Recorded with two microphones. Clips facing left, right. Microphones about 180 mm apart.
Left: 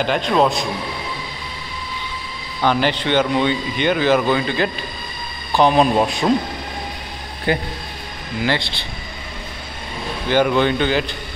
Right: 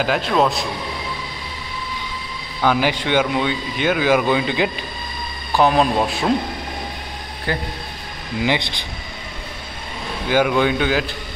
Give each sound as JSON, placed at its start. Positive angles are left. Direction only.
{"t": 0.0, "sound": "speech", "side_deg": -5}
{"t": 2.6, "sound": "speech", "side_deg": -10}
{"t": 5.5, "sound": "speech", "side_deg": 0}
{"t": 7.5, "sound": "a man's voice", "side_deg": 20}
{"t": 8.5, "sound": "speech", "side_deg": -15}
{"t": 10.3, "sound": "speech", "side_deg": -5}